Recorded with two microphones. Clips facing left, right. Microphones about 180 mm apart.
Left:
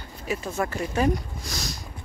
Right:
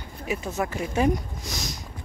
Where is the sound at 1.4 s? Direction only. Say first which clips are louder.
Even; 20° right (ahead or behind).